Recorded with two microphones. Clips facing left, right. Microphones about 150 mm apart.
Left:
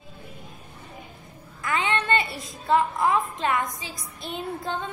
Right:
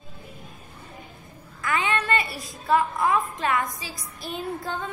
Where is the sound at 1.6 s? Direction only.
20° left (ahead or behind).